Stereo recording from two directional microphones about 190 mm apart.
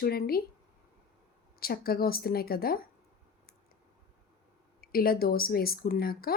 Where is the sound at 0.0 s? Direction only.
55° left (ahead or behind).